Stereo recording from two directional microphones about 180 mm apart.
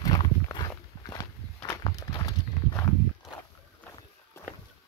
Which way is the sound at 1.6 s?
20° left (ahead or behind).